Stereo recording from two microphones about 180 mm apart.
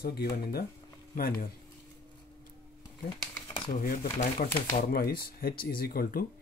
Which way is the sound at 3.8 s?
55° left (ahead or behind).